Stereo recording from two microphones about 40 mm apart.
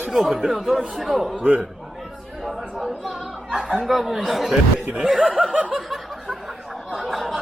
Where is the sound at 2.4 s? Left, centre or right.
Centre.